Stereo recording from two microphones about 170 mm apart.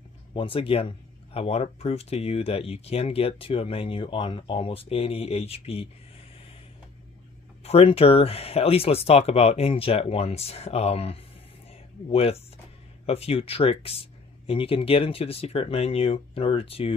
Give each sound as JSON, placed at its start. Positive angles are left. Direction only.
{"t": 0.3, "sound": "speech", "side_deg": 30}
{"t": 7.6, "sound": "speech", "side_deg": 35}